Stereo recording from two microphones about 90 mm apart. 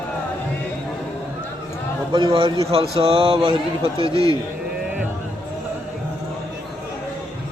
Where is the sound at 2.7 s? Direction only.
90° right.